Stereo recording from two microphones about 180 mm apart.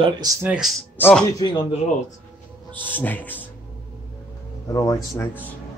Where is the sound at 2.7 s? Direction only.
10° left (ahead or behind).